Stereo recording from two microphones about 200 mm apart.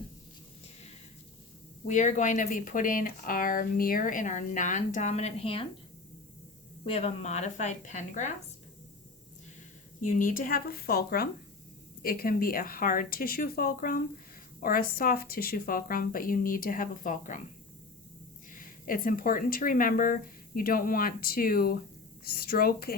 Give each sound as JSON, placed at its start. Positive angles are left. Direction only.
{"t": 1.9, "sound": "speech", "side_deg": 40}
{"t": 6.8, "sound": "speech", "side_deg": 30}
{"t": 10.0, "sound": "speech", "side_deg": 40}
{"t": 18.5, "sound": "speech", "side_deg": 45}